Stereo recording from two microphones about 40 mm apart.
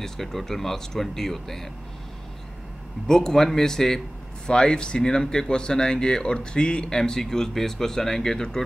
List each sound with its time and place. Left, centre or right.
0.0 s speech: centre
3.1 s speech: centre